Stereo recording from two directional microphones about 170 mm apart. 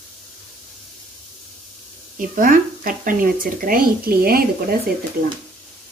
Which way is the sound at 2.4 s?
55° right (ahead or behind).